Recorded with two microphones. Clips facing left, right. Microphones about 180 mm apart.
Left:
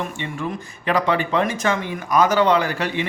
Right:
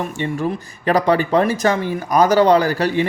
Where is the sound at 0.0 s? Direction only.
40° right (ahead or behind).